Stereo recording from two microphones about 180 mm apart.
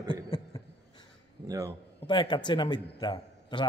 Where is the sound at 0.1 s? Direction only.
25° left (ahead or behind).